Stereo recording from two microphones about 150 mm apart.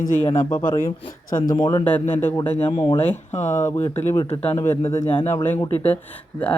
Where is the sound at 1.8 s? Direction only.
10° left (ahead or behind).